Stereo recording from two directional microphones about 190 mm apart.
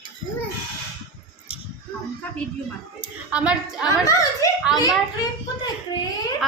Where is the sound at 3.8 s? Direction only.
15° left (ahead or behind).